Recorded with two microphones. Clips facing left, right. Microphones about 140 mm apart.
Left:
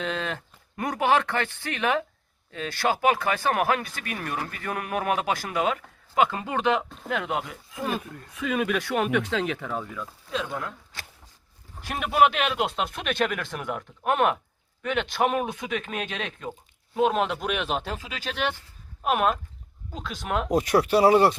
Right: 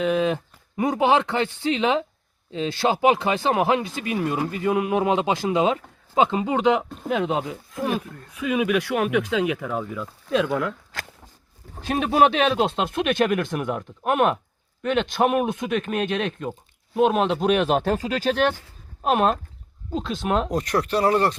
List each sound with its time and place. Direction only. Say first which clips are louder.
0.0 s speech: right 9 dB; 10° right (ahead or behind)
7.9 s speech: right 4 dB; 5° right (ahead or behind)
10.2 s speech: right 9 dB; 75° right (ahead or behind)
11.9 s speech: right 3 dB; 25° right (ahead or behind)
14.0 s speech: right 3 dB; 10° right (ahead or behind)
14.8 s speech: right 4 dB; 20° right (ahead or behind); by 17.7 s 40° right (ahead or behind)
17.7 s speech: right 10 dB; 50° right (ahead or behind)
19.0 s speech: right 3 dB; 30° right (ahead or behind)
20.5 s speech: left 2 dB; 5° left (ahead or behind)